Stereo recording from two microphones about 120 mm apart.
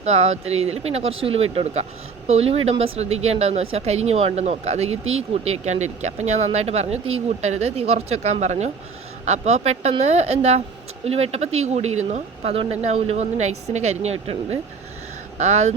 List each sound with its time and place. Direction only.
0.0 s speech: 65° right (ahead or behind)
15.4 s speech: 75° right (ahead or behind)